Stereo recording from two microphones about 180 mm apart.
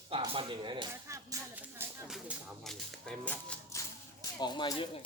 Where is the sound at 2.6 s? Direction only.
5° left (ahead or behind); by 5.0 s 25° left (ahead or behind).